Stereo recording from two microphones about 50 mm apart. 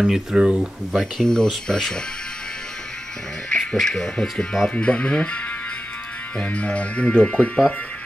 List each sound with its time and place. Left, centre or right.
0.0 s speech: centre
1.2 s speech: centre
3.4 s speech: centre
4.7 s speech: left